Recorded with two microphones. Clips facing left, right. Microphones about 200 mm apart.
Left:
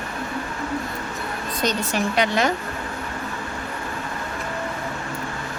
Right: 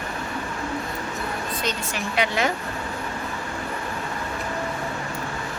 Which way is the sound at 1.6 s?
40° left (ahead or behind).